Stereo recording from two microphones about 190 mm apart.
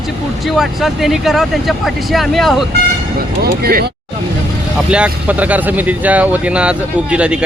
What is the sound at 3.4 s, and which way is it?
Speech, 55° right (ahead or behind).